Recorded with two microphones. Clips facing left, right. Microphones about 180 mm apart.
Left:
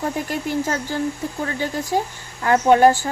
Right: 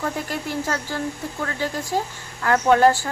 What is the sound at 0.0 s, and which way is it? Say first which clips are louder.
Speech: left 3 dB; 20° left (ahead or behind).